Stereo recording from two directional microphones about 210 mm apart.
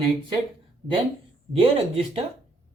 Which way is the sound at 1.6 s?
30° right (ahead or behind).